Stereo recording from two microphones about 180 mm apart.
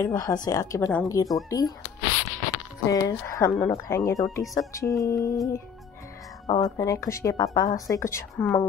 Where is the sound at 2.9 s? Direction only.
20° left (ahead or behind).